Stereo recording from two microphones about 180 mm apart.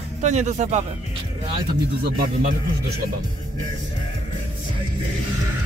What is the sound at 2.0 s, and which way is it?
Speech, 55° right (ahead or behind).